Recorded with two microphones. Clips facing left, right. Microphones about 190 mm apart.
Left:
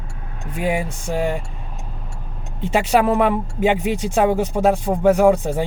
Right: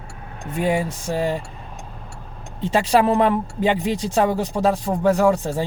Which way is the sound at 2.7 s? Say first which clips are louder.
Even; 10° left (ahead or behind).